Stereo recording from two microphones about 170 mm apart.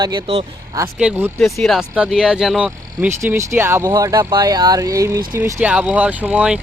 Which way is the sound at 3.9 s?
25° right (ahead or behind).